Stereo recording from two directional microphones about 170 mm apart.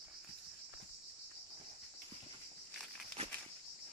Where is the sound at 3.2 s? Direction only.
35° right (ahead or behind).